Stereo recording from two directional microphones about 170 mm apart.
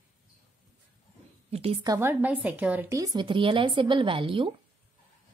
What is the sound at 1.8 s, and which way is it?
A woman's voice, 20° right (ahead or behind).